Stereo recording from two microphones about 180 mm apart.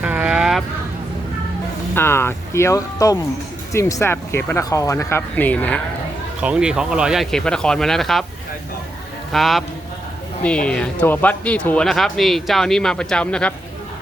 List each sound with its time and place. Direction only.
0.0 s a sound: 5° right (ahead or behind)
2.0 s speech: 15° left (ahead or behind)
6.4 s speech: 5° right (ahead or behind)
9.3 s speech: centre (ahead or behind)